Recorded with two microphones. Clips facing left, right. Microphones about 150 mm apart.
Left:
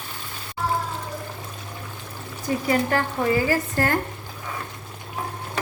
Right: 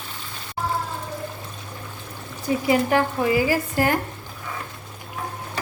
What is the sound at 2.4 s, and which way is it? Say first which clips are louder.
A woman's voice: right 2 dB; 10° right (ahead or behind).